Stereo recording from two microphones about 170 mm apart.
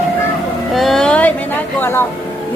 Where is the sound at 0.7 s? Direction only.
Centre (ahead or behind).